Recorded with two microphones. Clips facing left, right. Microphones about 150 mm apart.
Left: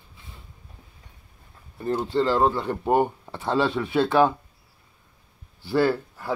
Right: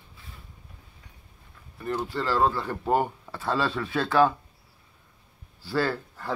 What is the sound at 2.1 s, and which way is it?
Speech, 25° left (ahead or behind).